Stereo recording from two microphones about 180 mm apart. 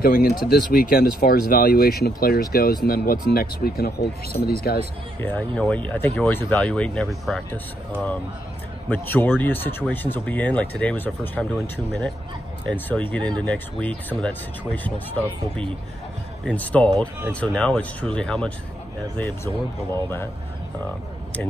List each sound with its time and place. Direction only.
0.0 s speech: 55° left (ahead or behind)
5.2 s speech: 10° left (ahead or behind)
8.8 s speech: 10° left (ahead or behind)